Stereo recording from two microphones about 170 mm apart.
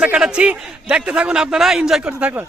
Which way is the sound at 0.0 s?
5° right (ahead or behind).